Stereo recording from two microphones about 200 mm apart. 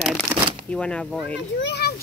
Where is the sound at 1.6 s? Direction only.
55° left (ahead or behind).